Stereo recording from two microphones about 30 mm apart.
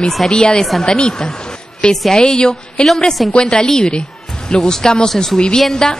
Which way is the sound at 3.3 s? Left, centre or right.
Left.